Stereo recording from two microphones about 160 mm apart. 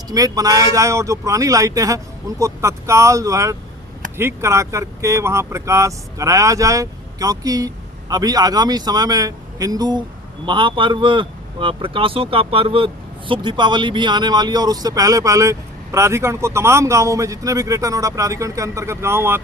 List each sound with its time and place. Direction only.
0.1 s a man's voice: 20° right (ahead or behind)